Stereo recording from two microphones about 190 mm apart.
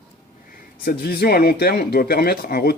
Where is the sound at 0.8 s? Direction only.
50° left (ahead or behind).